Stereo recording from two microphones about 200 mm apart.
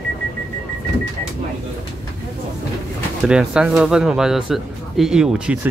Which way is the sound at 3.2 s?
5° right (ahead or behind).